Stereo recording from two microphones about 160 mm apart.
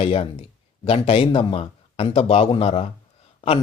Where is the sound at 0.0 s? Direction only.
35° left (ahead or behind).